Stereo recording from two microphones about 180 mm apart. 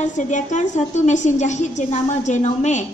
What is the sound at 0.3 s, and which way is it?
A woman's voice, 40° left (ahead or behind).